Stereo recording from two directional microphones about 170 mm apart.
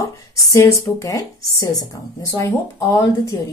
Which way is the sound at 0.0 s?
15° left (ahead or behind).